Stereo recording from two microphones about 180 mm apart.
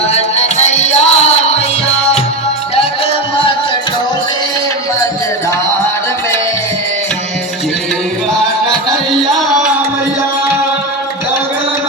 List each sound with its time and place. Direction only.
0.1 s music: 35° left (ahead or behind)
9.5 s music: 5° right (ahead or behind)